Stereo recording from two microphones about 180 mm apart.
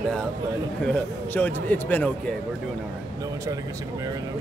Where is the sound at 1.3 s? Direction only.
10° left (ahead or behind).